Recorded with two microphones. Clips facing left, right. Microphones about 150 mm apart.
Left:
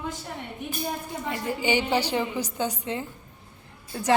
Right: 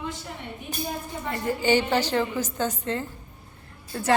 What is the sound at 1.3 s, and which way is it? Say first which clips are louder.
A woman's voice: right 3 dB; 15° left (ahead or behind).